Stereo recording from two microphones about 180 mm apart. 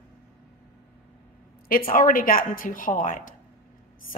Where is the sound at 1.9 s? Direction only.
50° left (ahead or behind).